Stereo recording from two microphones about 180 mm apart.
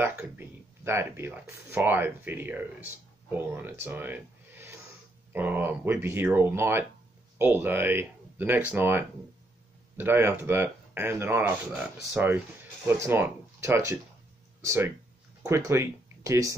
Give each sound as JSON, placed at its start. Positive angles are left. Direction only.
{"t": 0.2, "sound": "speech", "side_deg": -10}
{"t": 3.8, "sound": "a sound", "side_deg": -10}
{"t": 5.3, "sound": "speech", "side_deg": -10}